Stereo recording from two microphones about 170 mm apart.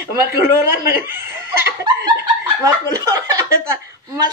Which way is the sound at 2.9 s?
20° right (ahead or behind).